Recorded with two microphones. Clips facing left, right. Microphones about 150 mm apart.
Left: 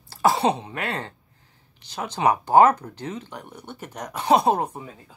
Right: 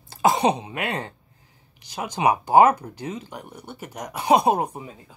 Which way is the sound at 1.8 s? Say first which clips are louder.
Even; 10° right (ahead or behind).